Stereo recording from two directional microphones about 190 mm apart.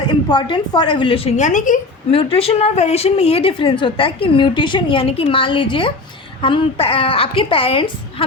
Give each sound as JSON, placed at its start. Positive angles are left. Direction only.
{"t": 0.1, "sound": "a woman's voice", "side_deg": 25}
{"t": 2.1, "sound": "a woman's voice", "side_deg": 30}